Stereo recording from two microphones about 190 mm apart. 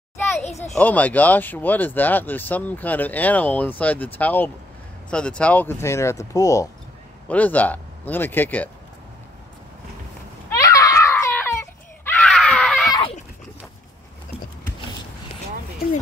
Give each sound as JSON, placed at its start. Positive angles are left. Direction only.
{"t": 0.4, "sound": "children playing", "side_deg": 35}
{"t": 0.7, "sound": "speech", "side_deg": 10}
{"t": 10.6, "sound": "screaming", "side_deg": 15}
{"t": 12.2, "sound": "screaming", "side_deg": 0}
{"t": 12.8, "sound": "a sound", "side_deg": 20}